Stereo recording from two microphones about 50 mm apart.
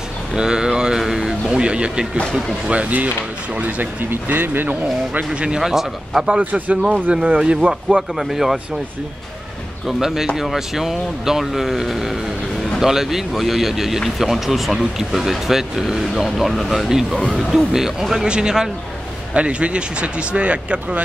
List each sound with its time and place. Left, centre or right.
0.3 s speech: centre; by 5.2 s right
5.3 s speech: right
5.6 s speech: centre
6.4 s speech: right
7.9 s speech: centre
9.8 s speech: centre; by 21.0 s right